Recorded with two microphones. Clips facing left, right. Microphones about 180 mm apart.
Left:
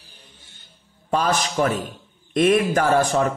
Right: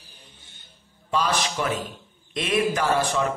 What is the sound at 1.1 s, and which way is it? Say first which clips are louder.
A man's voice: left 3 dB; 45° left (ahead or behind).